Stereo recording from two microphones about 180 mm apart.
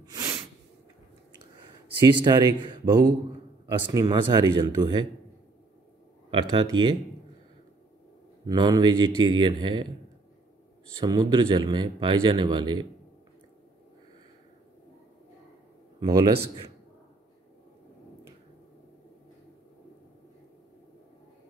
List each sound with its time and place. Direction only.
0.0 s sneeze: 20° right (ahead or behind)
2.1 s speech: 25° right (ahead or behind)
6.5 s speech: 25° right (ahead or behind)
8.5 s speech: 20° right (ahead or behind)
11.0 s speech: 20° right (ahead or behind)
16.0 s speech: 20° right (ahead or behind)